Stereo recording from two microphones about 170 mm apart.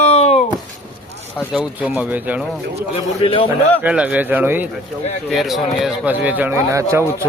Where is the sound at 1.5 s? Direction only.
10° right (ahead or behind).